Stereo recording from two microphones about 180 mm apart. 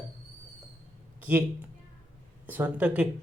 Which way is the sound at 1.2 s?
10° right (ahead or behind).